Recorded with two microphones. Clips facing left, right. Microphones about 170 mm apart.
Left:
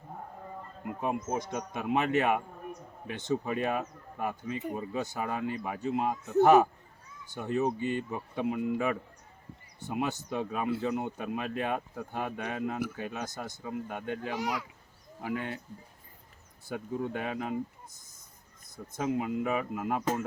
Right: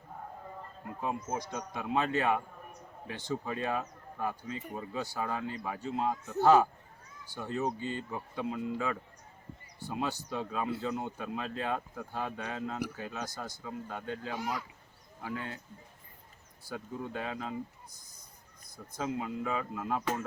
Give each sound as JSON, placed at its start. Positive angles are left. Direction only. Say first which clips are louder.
{"t": 1.0, "sound": "a man's voice", "louder": "left 3 dB", "side_deg": 20}
{"t": 14.0, "sound": "speech", "louder": "left 3 dB", "side_deg": 60}
{"t": 14.3, "sound": "speech", "louder": "left 2 dB", "side_deg": 80}
{"t": 15.3, "sound": "speech", "louder": "left 5 dB", "side_deg": 65}
{"t": 16.6, "sound": "a man's voice", "louder": "left 5 dB", "side_deg": 20}